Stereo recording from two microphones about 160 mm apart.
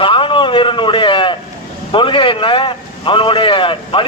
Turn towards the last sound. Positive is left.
turn(degrees=35)  # may be behind; listen again after turning